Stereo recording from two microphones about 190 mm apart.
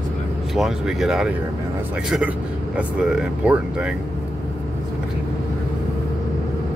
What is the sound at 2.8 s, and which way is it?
Speech, 5° right (ahead or behind).